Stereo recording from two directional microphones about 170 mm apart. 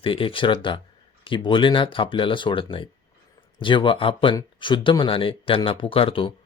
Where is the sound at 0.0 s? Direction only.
30° left (ahead or behind).